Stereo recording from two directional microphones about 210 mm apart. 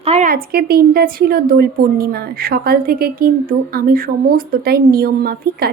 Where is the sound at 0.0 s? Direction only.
30° right (ahead or behind).